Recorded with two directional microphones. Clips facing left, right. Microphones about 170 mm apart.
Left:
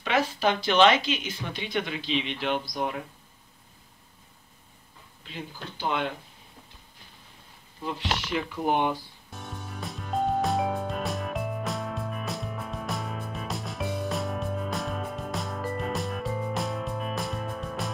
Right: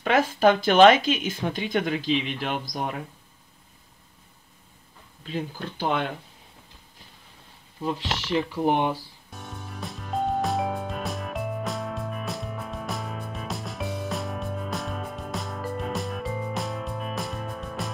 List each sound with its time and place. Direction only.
0.0 s speech: 50° right (ahead or behind)
5.3 s speech: 50° right (ahead or behind)
7.8 s speech: 25° right (ahead or behind)
9.3 s music: centre (ahead or behind)